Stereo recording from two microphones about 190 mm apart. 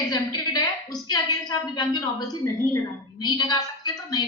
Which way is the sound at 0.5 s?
20° left (ahead or behind).